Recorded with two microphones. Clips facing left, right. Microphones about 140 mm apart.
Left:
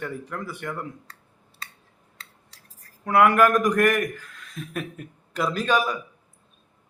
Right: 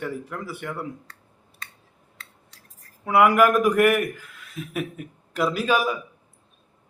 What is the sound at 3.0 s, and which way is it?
A man's voice, 5° right (ahead or behind).